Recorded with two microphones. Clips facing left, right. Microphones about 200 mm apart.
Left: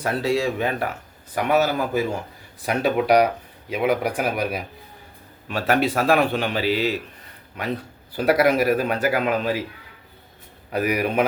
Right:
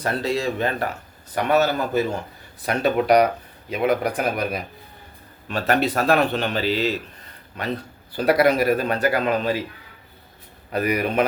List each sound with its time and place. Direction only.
0.0 s a man's voice: 10° left (ahead or behind)
10.7 s a man's voice: 5° left (ahead or behind)